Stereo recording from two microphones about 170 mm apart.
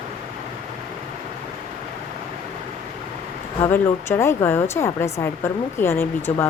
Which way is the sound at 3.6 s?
15° left (ahead or behind).